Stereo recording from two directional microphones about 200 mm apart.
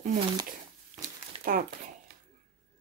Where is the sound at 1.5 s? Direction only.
45° right (ahead or behind).